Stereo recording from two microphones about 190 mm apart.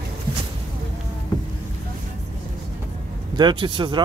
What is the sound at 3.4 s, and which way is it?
Speech, 25° right (ahead or behind).